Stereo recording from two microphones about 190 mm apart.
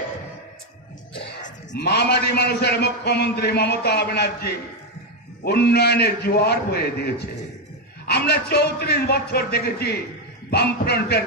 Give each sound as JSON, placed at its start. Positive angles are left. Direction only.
{"t": 1.7, "sound": "a man's voice", "side_deg": 60}